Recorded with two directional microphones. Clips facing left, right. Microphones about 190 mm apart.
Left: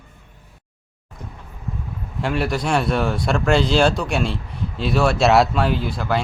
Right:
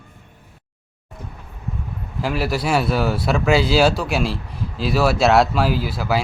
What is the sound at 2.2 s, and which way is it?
A man's voice, centre (ahead or behind).